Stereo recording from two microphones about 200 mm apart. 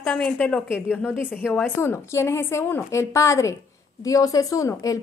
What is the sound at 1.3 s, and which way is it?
A woman's voice, 10° left (ahead or behind).